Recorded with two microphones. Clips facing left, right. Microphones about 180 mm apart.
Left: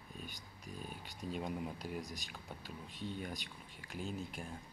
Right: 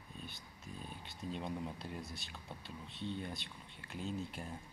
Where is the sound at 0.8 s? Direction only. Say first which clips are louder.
Even; 10° left (ahead or behind).